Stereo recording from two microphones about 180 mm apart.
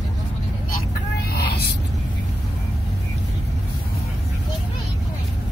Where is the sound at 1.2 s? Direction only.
60° left (ahead or behind).